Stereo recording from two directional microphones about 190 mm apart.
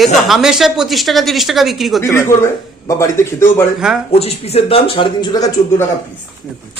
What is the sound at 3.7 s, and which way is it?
Speech, 5° right (ahead or behind).